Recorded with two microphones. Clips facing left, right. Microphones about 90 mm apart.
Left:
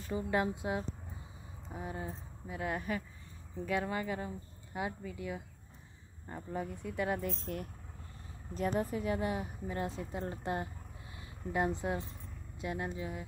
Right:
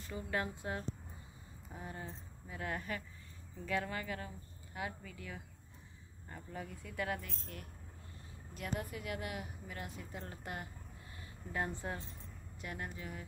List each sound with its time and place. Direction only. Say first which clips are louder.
0.1 s a woman's voice: left 6 dB; 20° left (ahead or behind)
6.2 s a woman's voice: left 7 dB; 25° left (ahead or behind)
7.2 s speech: left 11 dB; 50° left (ahead or behind)
8.5 s a woman's voice: left 8 dB; 35° left (ahead or behind); by 13.2 s 20° left (ahead or behind)